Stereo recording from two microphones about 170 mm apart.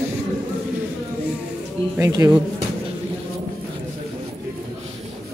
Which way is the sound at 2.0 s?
15° right (ahead or behind).